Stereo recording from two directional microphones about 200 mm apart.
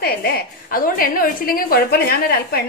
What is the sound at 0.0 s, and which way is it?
A woman's voice, 50° left (ahead or behind).